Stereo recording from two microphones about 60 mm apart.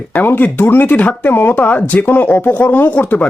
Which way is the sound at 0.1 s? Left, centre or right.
Left.